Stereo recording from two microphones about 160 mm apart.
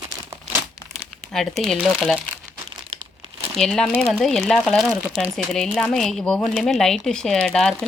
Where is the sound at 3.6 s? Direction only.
5° left (ahead or behind).